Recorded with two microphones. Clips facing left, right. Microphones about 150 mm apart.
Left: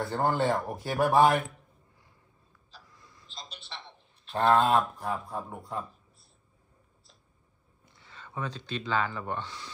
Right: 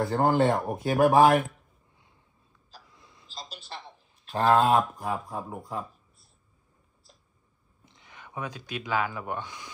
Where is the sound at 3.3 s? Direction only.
Centre (ahead or behind).